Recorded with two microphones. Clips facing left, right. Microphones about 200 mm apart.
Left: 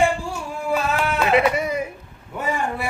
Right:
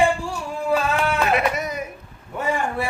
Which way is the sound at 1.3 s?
25° left (ahead or behind).